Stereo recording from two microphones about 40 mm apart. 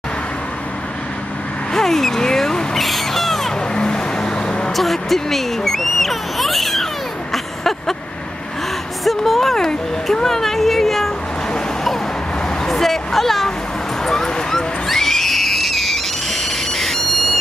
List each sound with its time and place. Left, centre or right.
1.7 s a sound: centre
2.8 s crow: centre
3.7 s vehicle: centre
4.7 s speech: centre
9.0 s a woman's voice: centre
12.6 s speech: centre
14.0 s a sound: centre